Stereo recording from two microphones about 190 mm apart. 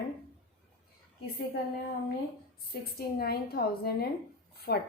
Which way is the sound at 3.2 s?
55° left (ahead or behind).